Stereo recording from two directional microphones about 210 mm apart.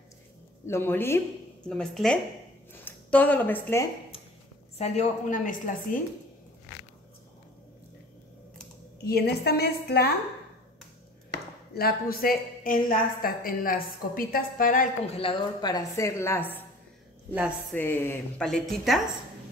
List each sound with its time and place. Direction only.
0.7 s a woman's voice: 10° left (ahead or behind)
4.7 s a woman's voice: 30° left (ahead or behind)
9.0 s a woman's voice: 50° left (ahead or behind)
11.7 s a woman's voice: 45° left (ahead or behind)
15.1 s a woman's voice: 25° left (ahead or behind)
17.7 s a woman's voice: 10° left (ahead or behind)